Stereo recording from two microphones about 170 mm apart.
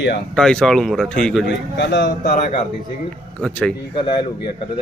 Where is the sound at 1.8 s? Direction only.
90° left.